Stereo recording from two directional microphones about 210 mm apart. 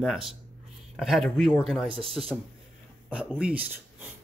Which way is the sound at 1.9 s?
25° right (ahead or behind).